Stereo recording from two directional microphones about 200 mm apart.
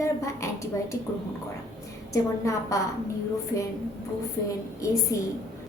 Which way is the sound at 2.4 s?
15° left (ahead or behind).